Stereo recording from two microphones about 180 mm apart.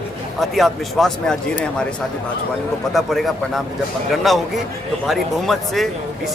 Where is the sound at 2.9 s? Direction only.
Centre (ahead or behind).